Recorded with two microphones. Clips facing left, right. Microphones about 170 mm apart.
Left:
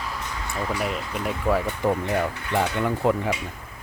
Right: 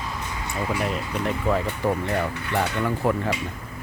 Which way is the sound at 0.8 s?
5° left (ahead or behind).